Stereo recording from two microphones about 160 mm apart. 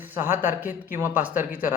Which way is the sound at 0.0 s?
15° right (ahead or behind).